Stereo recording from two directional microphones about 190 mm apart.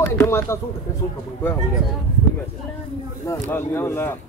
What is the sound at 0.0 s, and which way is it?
Speech, 15° left (ahead or behind).